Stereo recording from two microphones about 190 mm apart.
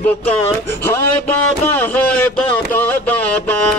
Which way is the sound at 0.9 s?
10° left (ahead or behind).